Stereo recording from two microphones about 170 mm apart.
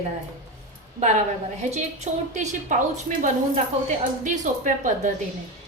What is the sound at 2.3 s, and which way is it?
A woman's voice, 45° right (ahead or behind).